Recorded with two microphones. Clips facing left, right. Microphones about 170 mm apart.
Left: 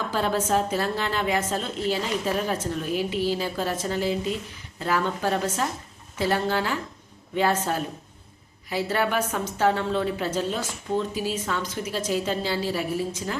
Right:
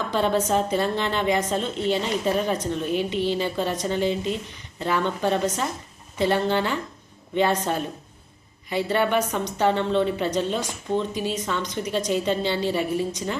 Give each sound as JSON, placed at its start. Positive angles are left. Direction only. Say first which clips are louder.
{"t": 0.1, "sound": "a woman's voice", "louder": "right 2 dB", "side_deg": 5}